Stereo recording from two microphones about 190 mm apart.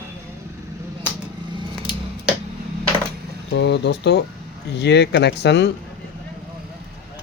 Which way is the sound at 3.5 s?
65° left (ahead or behind).